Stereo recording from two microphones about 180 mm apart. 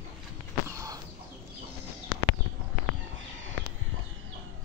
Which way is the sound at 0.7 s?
20° right (ahead or behind).